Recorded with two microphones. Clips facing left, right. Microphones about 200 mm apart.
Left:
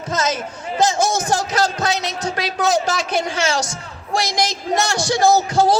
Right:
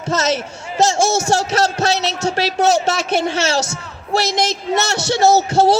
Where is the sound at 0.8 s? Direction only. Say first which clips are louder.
Right 2 dB; 25° right (ahead or behind).